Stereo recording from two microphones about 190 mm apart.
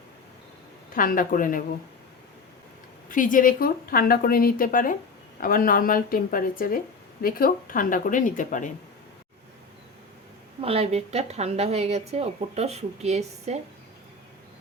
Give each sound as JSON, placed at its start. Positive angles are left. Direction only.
{"t": 0.9, "sound": "speech", "side_deg": 45}
{"t": 3.1, "sound": "speech", "side_deg": 45}
{"t": 10.6, "sound": "speech", "side_deg": -30}